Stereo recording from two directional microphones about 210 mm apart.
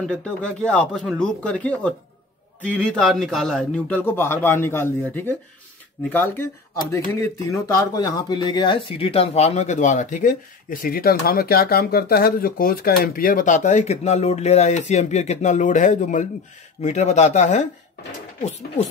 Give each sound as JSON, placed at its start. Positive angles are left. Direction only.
{"t": 0.0, "sound": "a man's voice", "side_deg": 5}